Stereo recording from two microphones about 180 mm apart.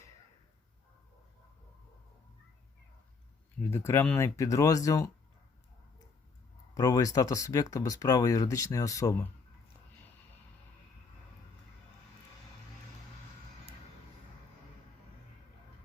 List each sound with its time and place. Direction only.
3.6 s speech: 15° left (ahead or behind)
6.7 s speech: 20° left (ahead or behind)